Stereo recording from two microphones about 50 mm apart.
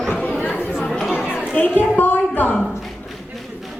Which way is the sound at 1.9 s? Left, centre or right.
Left.